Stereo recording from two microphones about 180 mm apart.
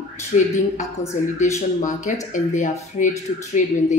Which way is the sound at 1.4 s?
40° left (ahead or behind).